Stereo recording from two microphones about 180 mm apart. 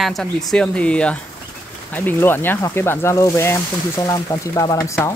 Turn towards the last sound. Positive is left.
turn(degrees=15)  # may be behind; listen again after turning